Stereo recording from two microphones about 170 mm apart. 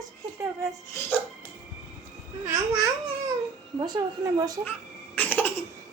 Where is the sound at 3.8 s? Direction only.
25° right (ahead or behind).